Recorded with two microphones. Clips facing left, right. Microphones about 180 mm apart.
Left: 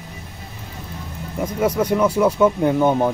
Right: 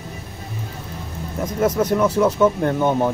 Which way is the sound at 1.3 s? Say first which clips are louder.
Even; 10° left (ahead or behind).